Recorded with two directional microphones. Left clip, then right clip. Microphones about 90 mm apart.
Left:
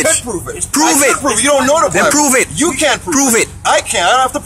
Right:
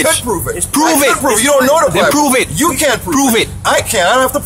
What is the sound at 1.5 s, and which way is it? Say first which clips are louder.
Speech: right 2 dB; 70° right (ahead or behind).